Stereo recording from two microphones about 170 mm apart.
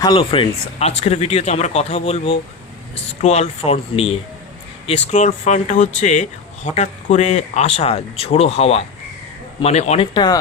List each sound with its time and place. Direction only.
0.0 s speech: 30° left (ahead or behind)